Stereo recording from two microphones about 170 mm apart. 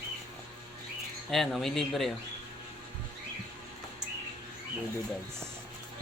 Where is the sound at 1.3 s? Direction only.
Centre (ahead or behind).